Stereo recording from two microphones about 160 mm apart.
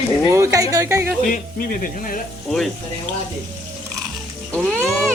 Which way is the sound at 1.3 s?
60° left (ahead or behind).